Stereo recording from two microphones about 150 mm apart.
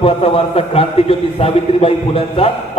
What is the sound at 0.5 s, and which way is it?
A man's voice, 40° left (ahead or behind).